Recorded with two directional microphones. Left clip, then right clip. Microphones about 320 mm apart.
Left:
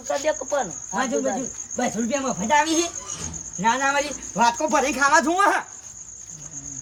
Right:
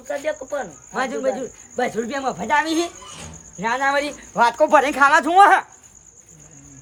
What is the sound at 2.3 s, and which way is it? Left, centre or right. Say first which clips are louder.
Speech: right 1 dB; centre.